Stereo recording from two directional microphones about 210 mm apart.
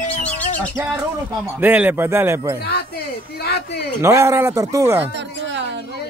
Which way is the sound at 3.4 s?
50° left (ahead or behind).